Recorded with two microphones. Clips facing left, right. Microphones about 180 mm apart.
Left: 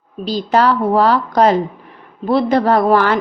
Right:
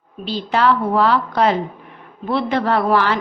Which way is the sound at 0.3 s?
40° left (ahead or behind).